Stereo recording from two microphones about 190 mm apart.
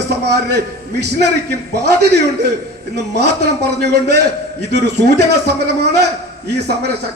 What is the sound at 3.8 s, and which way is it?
A man's voice, 60° right (ahead or behind).